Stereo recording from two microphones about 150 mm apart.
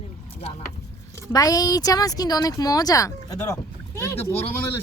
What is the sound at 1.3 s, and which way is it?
Speech, 25° left (ahead or behind).